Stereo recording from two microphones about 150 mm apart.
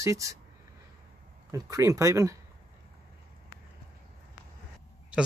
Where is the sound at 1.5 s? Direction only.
20° right (ahead or behind).